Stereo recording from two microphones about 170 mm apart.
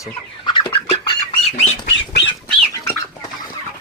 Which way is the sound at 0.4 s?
25° left (ahead or behind).